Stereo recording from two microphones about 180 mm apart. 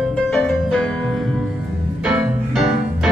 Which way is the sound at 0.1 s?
5° left (ahead or behind).